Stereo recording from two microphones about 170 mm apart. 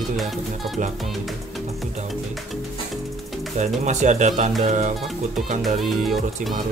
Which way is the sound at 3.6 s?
45° right (ahead or behind).